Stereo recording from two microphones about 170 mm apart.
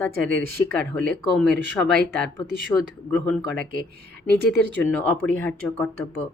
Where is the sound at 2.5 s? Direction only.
90° right.